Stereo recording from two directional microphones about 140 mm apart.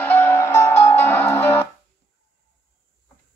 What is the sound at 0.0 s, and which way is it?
Music, 15° left (ahead or behind).